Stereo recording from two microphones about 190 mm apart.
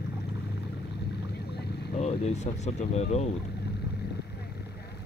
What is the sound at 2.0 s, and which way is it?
Speech, 35° left (ahead or behind).